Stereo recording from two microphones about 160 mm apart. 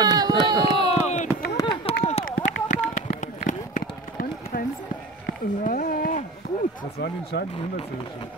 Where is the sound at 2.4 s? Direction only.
50° left (ahead or behind).